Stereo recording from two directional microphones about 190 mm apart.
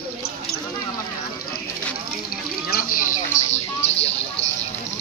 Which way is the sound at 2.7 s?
45° left (ahead or behind).